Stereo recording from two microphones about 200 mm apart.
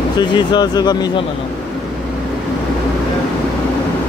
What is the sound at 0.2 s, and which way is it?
Speech, 20° left (ahead or behind).